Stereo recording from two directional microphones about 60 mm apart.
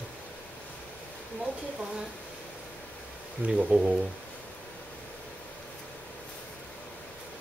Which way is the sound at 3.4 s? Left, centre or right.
Right.